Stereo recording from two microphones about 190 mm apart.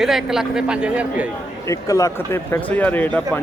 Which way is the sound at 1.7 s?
15° left (ahead or behind).